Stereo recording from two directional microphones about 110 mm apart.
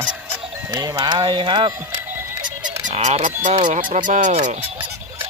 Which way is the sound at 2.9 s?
85° right.